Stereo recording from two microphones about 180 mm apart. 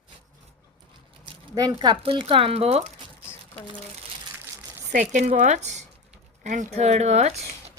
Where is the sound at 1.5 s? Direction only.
20° right (ahead or behind).